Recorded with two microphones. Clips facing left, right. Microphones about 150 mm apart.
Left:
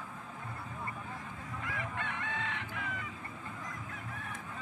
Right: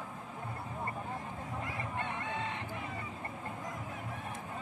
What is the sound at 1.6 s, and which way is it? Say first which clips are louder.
Chicken: even; 30° right (ahead or behind).